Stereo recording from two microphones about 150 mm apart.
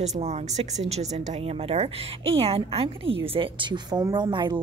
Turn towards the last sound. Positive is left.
turn(degrees=-30)  # may be behind; listen again after turning